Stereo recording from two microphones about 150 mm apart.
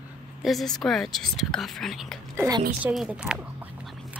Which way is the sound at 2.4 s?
25° right (ahead or behind).